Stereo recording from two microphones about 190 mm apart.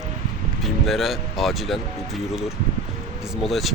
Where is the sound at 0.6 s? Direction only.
Centre (ahead or behind).